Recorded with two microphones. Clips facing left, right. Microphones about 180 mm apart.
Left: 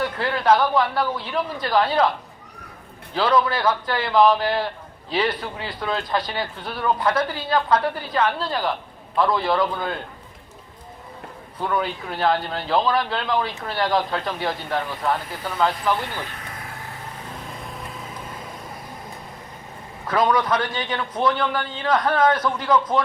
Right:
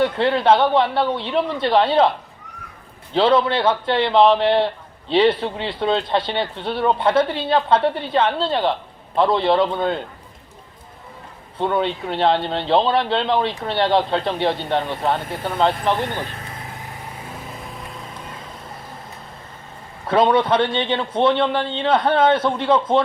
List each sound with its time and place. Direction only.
0.0 s a man's voice: 25° right (ahead or behind)
11.5 s a man's voice: 25° right (ahead or behind)
17.6 s vehicle: centre (ahead or behind)
20.1 s a man's voice: 30° right (ahead or behind)